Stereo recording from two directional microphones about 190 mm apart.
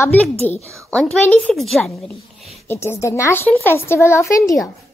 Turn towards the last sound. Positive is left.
turn(degrees=15)  # may be behind; listen again after turning